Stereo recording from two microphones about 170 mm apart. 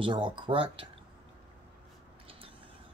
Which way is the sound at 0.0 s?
30° right (ahead or behind).